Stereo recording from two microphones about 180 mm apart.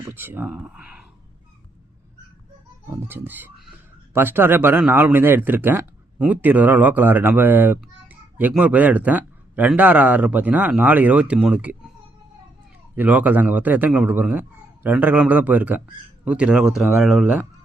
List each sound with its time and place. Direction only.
0.0 s speech: 10° right (ahead or behind)
3.1 s speech: 10° right (ahead or behind)
13.0 s speech: 10° right (ahead or behind)